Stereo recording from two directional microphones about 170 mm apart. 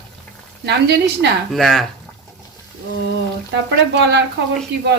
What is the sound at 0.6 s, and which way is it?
Speech, 90° right.